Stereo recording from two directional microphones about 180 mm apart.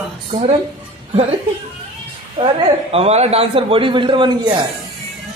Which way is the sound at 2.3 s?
30° right (ahead or behind).